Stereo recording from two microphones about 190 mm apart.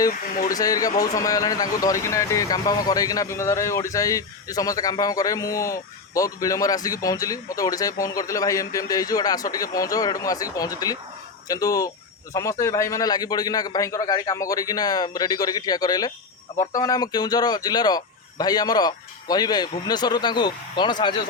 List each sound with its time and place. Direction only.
0.1 s speech: 45° left (ahead or behind)
0.5 s speech: 20° left (ahead or behind)